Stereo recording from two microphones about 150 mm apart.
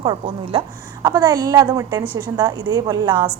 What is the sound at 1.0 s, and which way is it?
A woman's voice, 25° right (ahead or behind).